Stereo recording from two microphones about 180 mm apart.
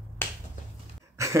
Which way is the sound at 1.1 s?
15° right (ahead or behind).